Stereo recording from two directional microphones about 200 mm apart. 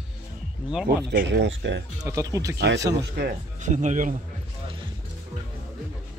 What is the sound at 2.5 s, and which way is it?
Speech, 55° right (ahead or behind).